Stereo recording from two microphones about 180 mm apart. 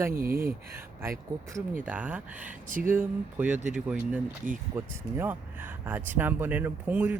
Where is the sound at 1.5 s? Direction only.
10° right (ahead or behind).